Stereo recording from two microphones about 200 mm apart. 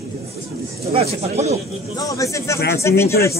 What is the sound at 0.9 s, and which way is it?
Speech, 30° right (ahead or behind).